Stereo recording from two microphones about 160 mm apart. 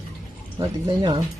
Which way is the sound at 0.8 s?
25° right (ahead or behind).